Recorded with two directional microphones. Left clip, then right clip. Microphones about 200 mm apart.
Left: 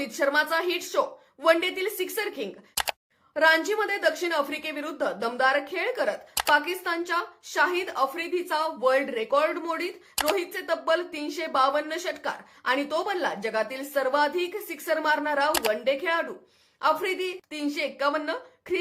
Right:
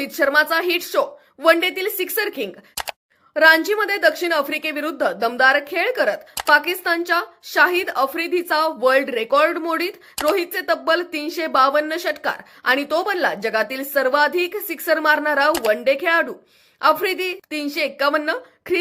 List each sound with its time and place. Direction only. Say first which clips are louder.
0.0 s a woman's voice: right 7 dB; 20° right (ahead or behind)
2.8 s a sound: even; centre (ahead or behind)
3.3 s a woman's voice: right 7 dB; 20° right (ahead or behind)